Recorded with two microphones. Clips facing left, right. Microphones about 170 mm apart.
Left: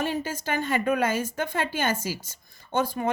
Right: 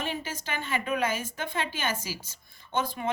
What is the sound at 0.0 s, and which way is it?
A woman's voice, 45° left (ahead or behind).